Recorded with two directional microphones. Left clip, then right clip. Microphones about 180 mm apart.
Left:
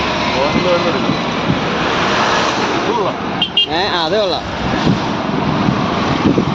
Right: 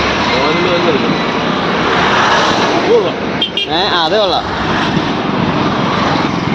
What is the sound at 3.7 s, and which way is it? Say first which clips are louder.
Speech: right 3 dB; 15° left (ahead or behind).